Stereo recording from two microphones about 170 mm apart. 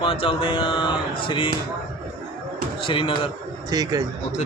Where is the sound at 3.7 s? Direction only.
20° right (ahead or behind).